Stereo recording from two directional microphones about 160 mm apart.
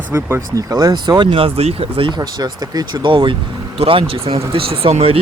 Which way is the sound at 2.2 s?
25° right (ahead or behind).